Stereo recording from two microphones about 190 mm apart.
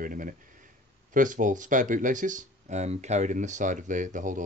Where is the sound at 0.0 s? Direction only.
45° right (ahead or behind).